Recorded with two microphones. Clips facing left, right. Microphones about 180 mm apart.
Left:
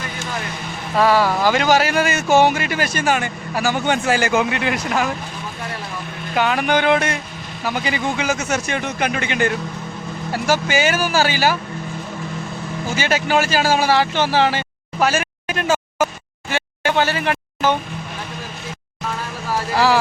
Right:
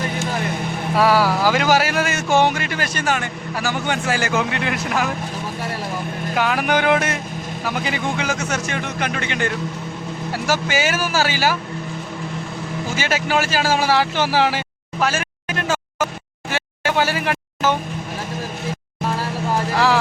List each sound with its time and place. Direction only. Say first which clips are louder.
0.9 s speech: left 1 dB; 5° right (ahead or behind); by 4.3 s 20° left (ahead or behind)
4.5 s speech: left 1 dB; centre (ahead or behind)
6.3 s speech: left 2 dB; centre (ahead or behind)
13.0 s speech: left 2 dB; 5° right (ahead or behind)
15.0 s vehicle: left 3 dB; 10° left (ahead or behind)
16.5 s a sound: left 2 dB; 5° right (ahead or behind)
19.7 s a sound: left 2 dB; 5° left (ahead or behind)